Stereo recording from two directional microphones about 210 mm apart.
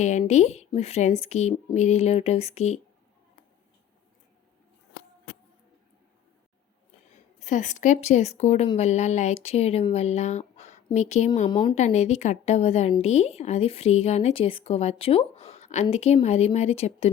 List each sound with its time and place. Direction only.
0.0 s a woman's voice: 35° left (ahead or behind)
7.3 s a woman's voice: 35° left (ahead or behind)
11.4 s speech: 20° left (ahead or behind)
11.8 s a woman's voice: 35° left (ahead or behind)